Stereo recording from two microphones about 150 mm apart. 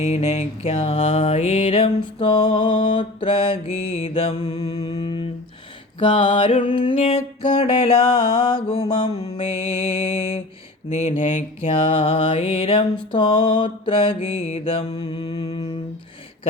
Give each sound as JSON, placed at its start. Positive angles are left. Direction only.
{"t": 0.0, "sound": "mantra", "side_deg": 45}
{"t": 4.5, "sound": "mantra", "side_deg": 25}
{"t": 10.8, "sound": "speech", "side_deg": 45}
{"t": 11.7, "sound": "mantra", "side_deg": 40}